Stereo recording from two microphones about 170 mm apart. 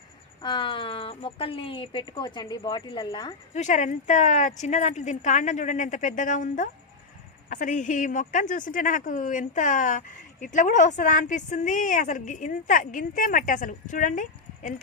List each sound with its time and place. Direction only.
0.4 s speech: 30° left (ahead or behind)
3.5 s speech: 45° left (ahead or behind)